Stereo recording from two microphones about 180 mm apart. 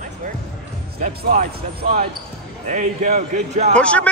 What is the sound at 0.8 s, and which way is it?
Speech, 60° right (ahead or behind).